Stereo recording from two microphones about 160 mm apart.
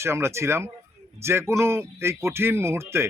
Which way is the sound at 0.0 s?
15° right (ahead or behind).